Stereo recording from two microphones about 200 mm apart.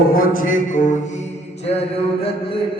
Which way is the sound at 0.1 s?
45° left (ahead or behind).